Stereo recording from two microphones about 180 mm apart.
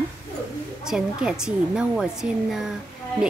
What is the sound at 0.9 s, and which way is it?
A woman's voice, 5° right (ahead or behind).